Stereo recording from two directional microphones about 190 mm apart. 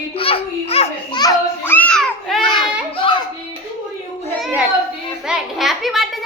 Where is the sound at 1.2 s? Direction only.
15° left (ahead or behind).